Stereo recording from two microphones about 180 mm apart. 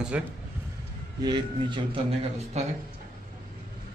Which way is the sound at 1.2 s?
25° right (ahead or behind).